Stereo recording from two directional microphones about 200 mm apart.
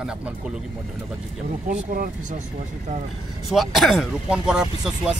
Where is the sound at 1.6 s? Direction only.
45° right (ahead or behind).